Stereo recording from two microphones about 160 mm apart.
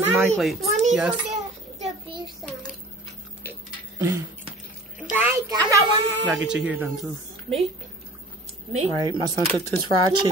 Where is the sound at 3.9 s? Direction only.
20° right (ahead or behind).